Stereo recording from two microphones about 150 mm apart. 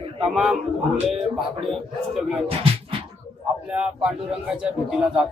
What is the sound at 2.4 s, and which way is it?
Music, 40° right (ahead or behind).